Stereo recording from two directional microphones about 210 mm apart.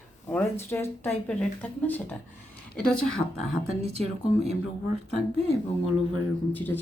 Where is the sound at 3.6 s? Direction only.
30° right (ahead or behind).